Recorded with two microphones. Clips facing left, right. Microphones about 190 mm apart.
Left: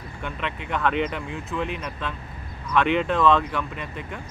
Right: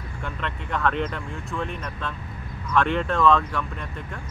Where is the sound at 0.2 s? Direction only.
Centre (ahead or behind).